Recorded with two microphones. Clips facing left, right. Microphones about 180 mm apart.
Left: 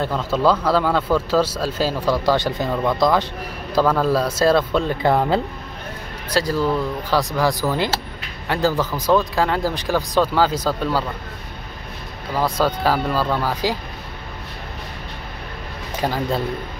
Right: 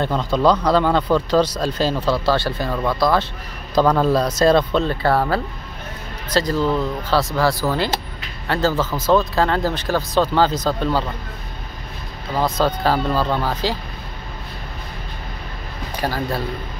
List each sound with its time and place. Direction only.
0.0 s speech: 5° left (ahead or behind)
12.4 s speech: 10° left (ahead or behind)
16.0 s a man's voice: 20° left (ahead or behind)